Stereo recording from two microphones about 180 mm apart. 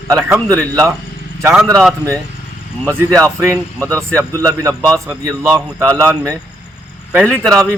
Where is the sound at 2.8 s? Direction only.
15° right (ahead or behind).